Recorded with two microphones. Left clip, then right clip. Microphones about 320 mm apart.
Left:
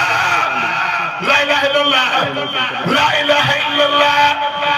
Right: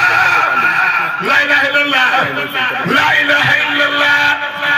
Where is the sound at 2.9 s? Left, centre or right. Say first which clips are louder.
Right 2 dB; centre.